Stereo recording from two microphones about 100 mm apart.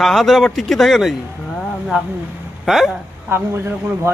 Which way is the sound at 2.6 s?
Centre (ahead or behind).